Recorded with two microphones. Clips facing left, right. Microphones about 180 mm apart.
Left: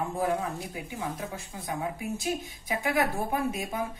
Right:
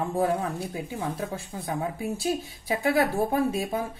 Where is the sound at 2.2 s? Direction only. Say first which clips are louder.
Right 4 dB; 30° right (ahead or behind).